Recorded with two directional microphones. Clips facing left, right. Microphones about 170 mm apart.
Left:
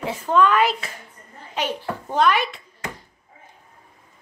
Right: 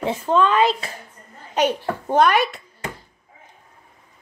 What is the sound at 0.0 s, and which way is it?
Speech, 25° right (ahead or behind).